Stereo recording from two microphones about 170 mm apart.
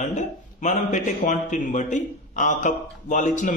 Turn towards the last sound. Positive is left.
turn(degrees=45)  # may be behind; listen again after turning